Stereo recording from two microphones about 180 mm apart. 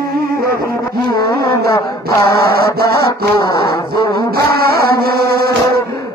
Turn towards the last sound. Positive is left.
turn(degrees=-60)  # may be behind; listen again after turning